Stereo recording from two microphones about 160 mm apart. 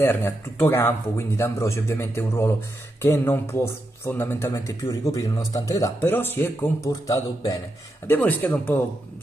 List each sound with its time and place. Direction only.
0.0 s speech: 15° left (ahead or behind)